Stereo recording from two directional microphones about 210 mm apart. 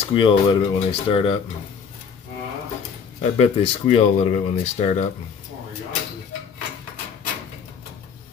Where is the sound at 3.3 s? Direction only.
30° left (ahead or behind).